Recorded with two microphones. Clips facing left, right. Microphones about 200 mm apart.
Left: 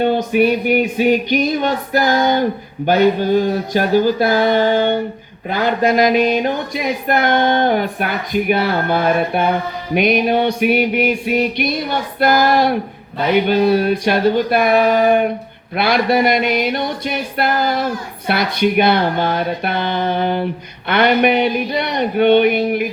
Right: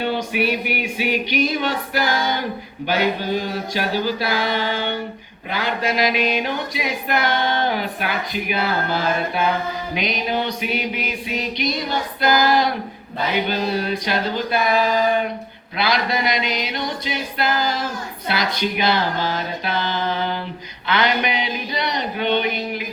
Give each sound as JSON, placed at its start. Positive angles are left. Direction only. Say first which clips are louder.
{"t": 0.0, "sound": "music", "louder": "left 7 dB", "side_deg": 50}
{"t": 13.5, "sound": "speech", "louder": "left 8 dB", "side_deg": 55}